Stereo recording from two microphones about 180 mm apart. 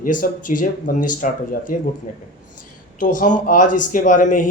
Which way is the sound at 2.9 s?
45° left (ahead or behind).